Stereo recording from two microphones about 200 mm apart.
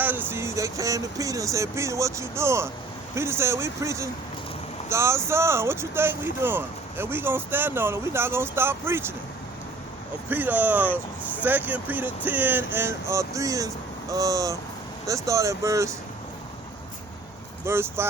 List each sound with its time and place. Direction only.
0.0 s speech: 10° right (ahead or behind)
10.2 s speech: 10° right (ahead or behind)
17.7 s speech: 10° right (ahead or behind)